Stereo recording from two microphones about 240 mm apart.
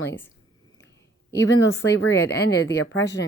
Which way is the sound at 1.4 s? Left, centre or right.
Left.